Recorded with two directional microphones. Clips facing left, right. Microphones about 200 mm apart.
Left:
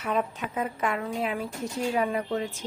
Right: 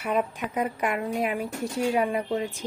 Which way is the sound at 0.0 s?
10° right (ahead or behind).